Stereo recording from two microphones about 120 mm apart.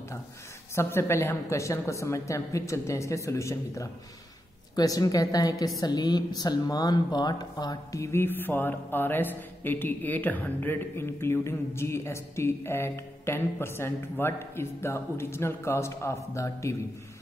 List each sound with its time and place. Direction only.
0.7 s a woman's voice: 20° left (ahead or behind)